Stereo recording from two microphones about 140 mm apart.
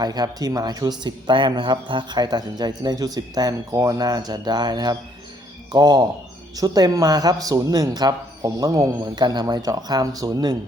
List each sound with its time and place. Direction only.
0.0 s speech: 30° right (ahead or behind)